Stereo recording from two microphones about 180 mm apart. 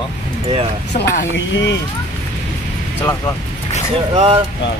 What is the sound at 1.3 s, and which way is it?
Speech, 75° left (ahead or behind).